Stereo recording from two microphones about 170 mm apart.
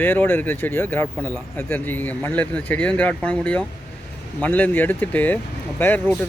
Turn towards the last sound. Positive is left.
turn(degrees=10)  # may be behind; listen again after turning